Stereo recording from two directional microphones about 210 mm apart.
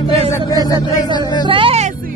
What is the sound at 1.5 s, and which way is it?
Speech, 25° right (ahead or behind).